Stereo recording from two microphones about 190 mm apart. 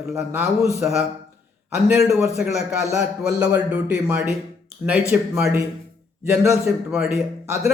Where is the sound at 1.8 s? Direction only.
5° right (ahead or behind).